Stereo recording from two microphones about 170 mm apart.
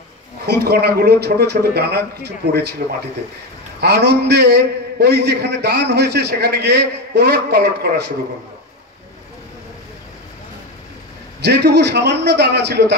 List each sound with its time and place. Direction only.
0.5 s a man's voice: 70° right (ahead or behind)
3.8 s a man's voice: 70° right (ahead or behind)
11.4 s a man's voice: 80° right